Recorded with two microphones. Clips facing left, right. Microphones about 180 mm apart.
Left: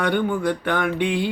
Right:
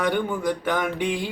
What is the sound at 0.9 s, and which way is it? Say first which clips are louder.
Mantra: left 4 dB; 40° right (ahead or behind).